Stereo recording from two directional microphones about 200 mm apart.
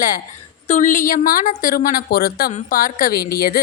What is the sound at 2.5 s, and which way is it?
A woman's voice, 40° left (ahead or behind).